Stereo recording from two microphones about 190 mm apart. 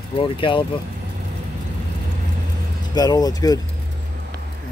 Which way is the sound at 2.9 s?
20° left (ahead or behind).